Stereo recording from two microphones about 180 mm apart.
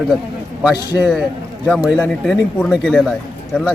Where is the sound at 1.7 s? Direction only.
5° left (ahead or behind).